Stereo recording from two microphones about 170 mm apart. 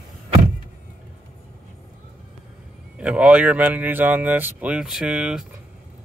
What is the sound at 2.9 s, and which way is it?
Speech, 5° right (ahead or behind).